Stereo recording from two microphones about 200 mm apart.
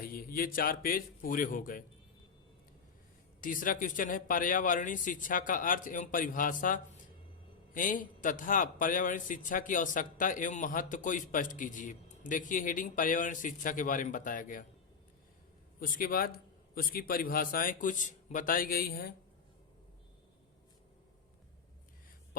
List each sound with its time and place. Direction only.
0.0 s a man's voice: 45° left (ahead or behind)
3.4 s a man's voice: 40° left (ahead or behind)
15.8 s a man's voice: 45° left (ahead or behind)